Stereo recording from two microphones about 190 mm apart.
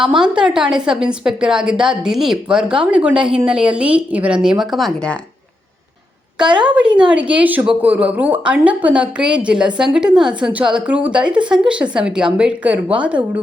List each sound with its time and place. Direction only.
0.0 s speech: 5° right (ahead or behind)
6.7 s speech: 5° right (ahead or behind)